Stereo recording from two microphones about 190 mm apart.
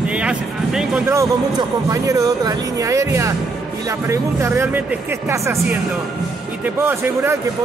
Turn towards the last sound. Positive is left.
turn(degrees=-10)  # may be behind; listen again after turning